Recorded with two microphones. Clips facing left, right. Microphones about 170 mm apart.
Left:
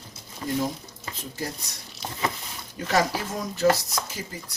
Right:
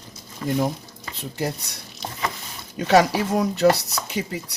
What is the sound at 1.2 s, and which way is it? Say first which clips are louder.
Speech: right 7 dB; 70° right (ahead or behind).